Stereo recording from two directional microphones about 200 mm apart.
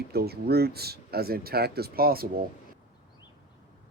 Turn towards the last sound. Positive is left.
turn(degrees=-50)  # may be behind; listen again after turning